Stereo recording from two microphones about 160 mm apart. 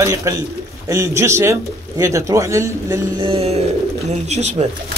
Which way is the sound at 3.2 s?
35° right (ahead or behind).